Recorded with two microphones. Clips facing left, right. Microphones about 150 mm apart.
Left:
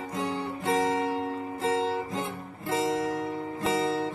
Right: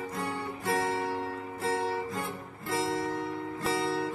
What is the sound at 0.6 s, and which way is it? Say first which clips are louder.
Guitar: left 4 dB; 20° left (ahead or behind).